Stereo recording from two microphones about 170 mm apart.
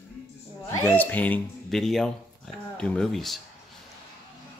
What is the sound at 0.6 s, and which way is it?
Speech, 10° left (ahead or behind).